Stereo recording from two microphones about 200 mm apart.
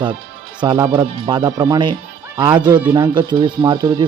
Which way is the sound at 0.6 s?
25° right (ahead or behind).